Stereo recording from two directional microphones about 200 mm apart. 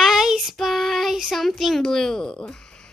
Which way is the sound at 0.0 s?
Centre (ahead or behind).